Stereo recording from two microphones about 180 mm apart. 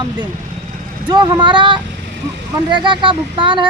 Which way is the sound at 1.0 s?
25° right (ahead or behind).